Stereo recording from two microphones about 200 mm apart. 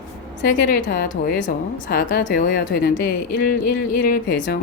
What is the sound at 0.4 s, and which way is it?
A woman's voice, 45° left (ahead or behind).